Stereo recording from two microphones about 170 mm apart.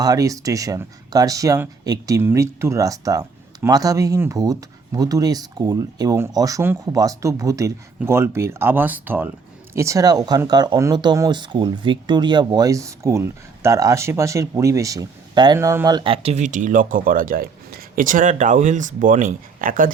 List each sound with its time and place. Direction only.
0.0 s speech: 20° right (ahead or behind); by 19.9 s 55° right (ahead or behind)